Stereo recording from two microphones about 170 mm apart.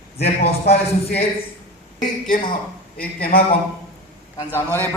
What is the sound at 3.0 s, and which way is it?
Speech, 65° left (ahead or behind).